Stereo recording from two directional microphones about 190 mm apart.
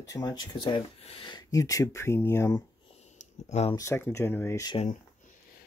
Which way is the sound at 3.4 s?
35° left (ahead or behind).